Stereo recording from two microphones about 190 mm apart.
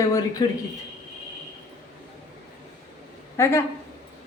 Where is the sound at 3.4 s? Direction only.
15° left (ahead or behind).